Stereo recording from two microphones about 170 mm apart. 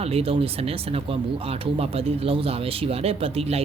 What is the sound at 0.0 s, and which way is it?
Speech, 35° right (ahead or behind).